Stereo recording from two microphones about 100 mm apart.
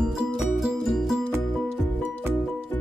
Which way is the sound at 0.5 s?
Centre (ahead or behind).